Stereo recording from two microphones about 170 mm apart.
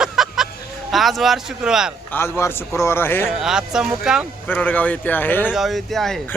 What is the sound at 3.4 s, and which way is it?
Speech, 5° right (ahead or behind).